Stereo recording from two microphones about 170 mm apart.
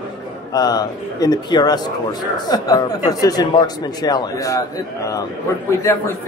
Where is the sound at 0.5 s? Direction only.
25° left (ahead or behind).